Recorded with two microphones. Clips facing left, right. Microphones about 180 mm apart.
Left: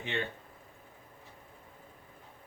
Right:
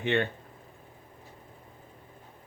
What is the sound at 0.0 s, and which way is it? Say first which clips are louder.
Speech: right 8 dB; 65° right (ahead or behind).